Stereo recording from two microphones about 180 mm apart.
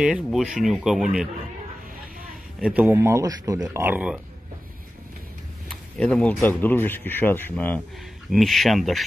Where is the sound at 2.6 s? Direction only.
10° right (ahead or behind).